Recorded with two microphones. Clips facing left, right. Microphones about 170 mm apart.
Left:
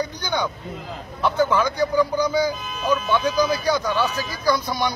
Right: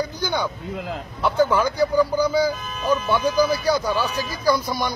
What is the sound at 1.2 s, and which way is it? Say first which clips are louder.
Speech: right 1 dB; 10° right (ahead or behind).